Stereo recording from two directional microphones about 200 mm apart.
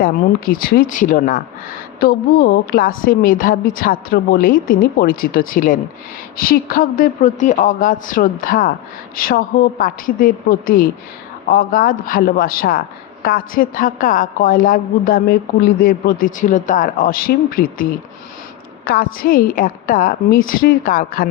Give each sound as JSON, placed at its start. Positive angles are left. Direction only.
{"t": 0.0, "sound": "a woman's voice", "side_deg": 45}
{"t": 18.9, "sound": "a woman's voice", "side_deg": 50}